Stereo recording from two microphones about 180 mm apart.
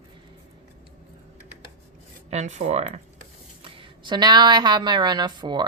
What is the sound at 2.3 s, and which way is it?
Speech, 40° right (ahead or behind).